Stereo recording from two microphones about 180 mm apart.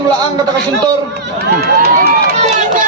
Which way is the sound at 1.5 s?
60° right (ahead or behind).